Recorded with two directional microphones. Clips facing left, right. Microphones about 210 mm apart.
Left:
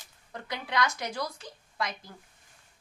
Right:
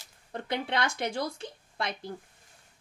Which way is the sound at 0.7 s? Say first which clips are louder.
Left 3 dB; 30° right (ahead or behind).